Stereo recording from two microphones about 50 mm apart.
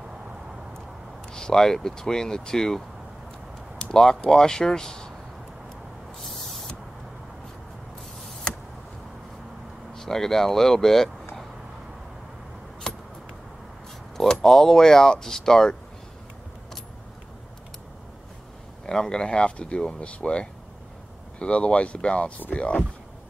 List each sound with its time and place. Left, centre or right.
1.3 s speech: centre
3.7 s a sound: centre
4.3 s speech: centre
9.9 s speech: centre
14.1 s speech: centre
18.9 s speech: centre; by 22.7 s left